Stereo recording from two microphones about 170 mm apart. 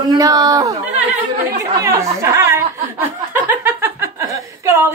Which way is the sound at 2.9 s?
10° right (ahead or behind).